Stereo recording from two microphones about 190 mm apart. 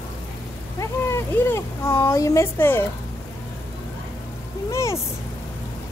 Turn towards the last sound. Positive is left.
turn(degrees=15)  # may be behind; listen again after turning